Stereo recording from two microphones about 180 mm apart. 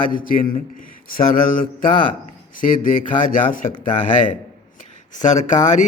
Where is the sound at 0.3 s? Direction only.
50° left (ahead or behind).